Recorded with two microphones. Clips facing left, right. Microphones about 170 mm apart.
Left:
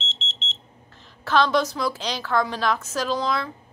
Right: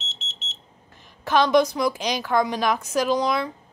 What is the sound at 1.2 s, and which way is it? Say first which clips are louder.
A woman's voice: right 3 dB; 15° right (ahead or behind).